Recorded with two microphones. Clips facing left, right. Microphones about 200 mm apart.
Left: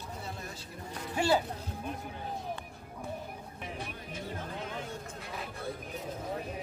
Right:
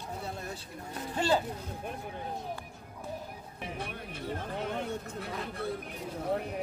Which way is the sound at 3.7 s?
60° right (ahead or behind).